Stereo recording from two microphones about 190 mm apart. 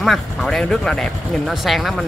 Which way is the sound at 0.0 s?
Centre (ahead or behind).